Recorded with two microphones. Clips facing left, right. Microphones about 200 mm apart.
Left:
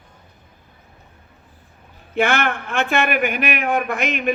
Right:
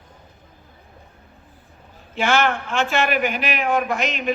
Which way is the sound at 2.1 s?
55° left (ahead or behind).